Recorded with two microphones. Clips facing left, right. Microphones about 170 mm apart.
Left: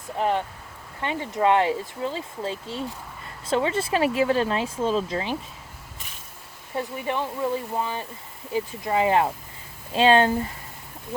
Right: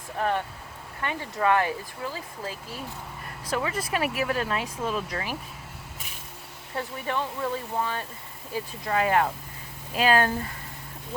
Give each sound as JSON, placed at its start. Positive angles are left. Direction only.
{"t": 0.2, "sound": "speech", "side_deg": 20}
{"t": 6.7, "sound": "speech", "side_deg": 20}